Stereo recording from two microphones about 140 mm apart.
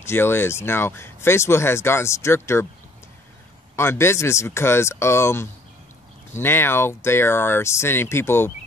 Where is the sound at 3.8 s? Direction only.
20° left (ahead or behind).